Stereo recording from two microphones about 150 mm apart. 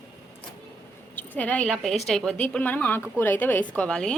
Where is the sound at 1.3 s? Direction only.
10° left (ahead or behind).